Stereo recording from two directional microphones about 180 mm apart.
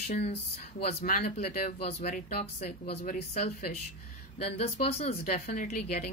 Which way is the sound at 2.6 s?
45° left (ahead or behind).